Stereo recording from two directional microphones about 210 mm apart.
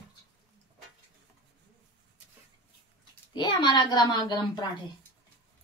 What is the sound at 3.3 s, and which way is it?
A child's voice, 20° left (ahead or behind).